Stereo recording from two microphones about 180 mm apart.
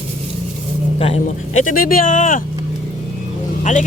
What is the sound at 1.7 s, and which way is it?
Speech, 50° left (ahead or behind).